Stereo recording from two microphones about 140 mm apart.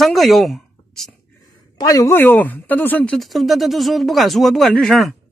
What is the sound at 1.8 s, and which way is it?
Speech, 30° left (ahead or behind).